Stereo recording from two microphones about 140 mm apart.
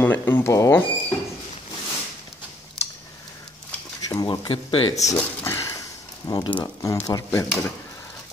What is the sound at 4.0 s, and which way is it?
Speech, 25° left (ahead or behind).